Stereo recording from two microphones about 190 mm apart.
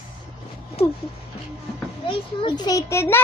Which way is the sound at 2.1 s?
25° left (ahead or behind).